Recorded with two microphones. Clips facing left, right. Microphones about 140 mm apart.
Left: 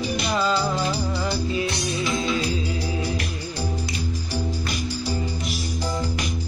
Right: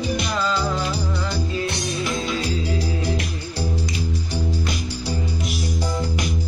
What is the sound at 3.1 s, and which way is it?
Music, 90° right.